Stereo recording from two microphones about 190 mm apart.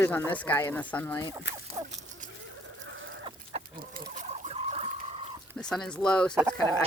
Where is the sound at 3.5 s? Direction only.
35° right (ahead or behind).